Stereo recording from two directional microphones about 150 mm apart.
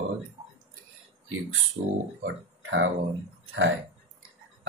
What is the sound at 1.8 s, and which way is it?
Speech, 90° right.